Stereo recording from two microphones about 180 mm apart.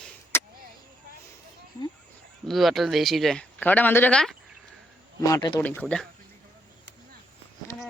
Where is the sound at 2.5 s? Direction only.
Centre (ahead or behind).